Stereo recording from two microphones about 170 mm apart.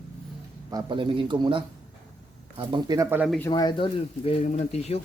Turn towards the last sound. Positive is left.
turn(degrees=40)  # may be behind; listen again after turning